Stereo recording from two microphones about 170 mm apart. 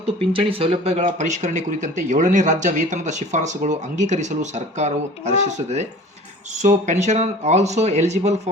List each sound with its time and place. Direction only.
0.3 s speech: 35° right (ahead or behind)